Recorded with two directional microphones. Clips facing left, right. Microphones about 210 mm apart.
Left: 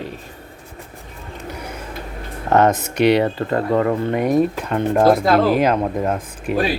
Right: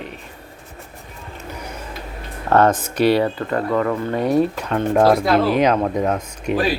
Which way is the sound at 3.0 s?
20° left (ahead or behind).